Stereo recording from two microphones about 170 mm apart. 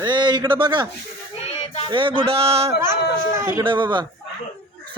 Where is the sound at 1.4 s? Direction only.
40° left (ahead or behind).